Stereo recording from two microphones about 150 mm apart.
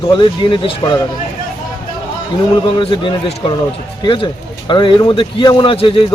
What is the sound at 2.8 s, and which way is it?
Speech, 35° left (ahead or behind).